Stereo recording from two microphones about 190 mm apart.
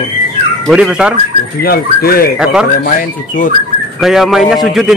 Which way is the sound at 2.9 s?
45° left (ahead or behind).